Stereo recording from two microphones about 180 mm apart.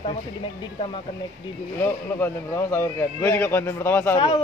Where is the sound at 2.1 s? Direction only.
10° left (ahead or behind).